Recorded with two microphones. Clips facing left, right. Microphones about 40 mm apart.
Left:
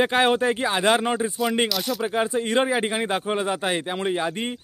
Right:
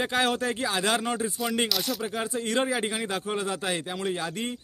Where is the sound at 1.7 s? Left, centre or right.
Centre.